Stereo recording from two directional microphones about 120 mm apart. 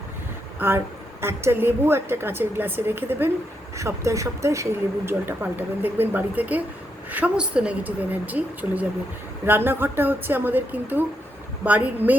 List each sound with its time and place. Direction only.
0.6 s a woman's voice: 20° right (ahead or behind)